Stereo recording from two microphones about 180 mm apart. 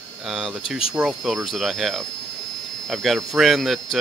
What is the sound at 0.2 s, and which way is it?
Speech, centre (ahead or behind).